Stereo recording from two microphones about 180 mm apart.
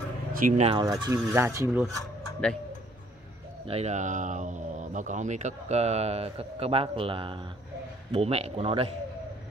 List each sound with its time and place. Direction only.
0.3 s speech: 50° right (ahead or behind)
0.7 s speech: 25° right (ahead or behind)
2.4 s speech: 5° left (ahead or behind)
3.6 s speech: 35° right (ahead or behind)